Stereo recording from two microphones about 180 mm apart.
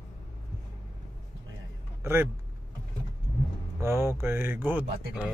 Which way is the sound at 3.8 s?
15° right (ahead or behind).